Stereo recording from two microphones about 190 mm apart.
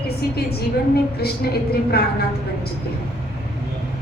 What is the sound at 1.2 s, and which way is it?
Speech, 55° left (ahead or behind).